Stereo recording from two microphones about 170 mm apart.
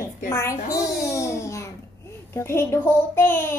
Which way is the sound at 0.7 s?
20° left (ahead or behind).